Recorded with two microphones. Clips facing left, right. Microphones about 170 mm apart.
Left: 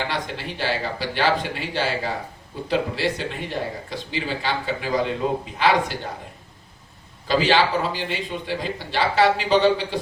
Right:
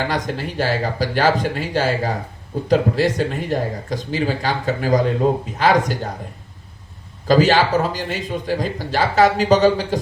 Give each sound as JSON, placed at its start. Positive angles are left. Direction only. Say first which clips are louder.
{"t": 0.0, "sound": "a man's voice", "louder": "right 5 dB", "side_deg": -45}
{"t": 7.3, "sound": "a man's voice", "louder": "right 5 dB", "side_deg": -45}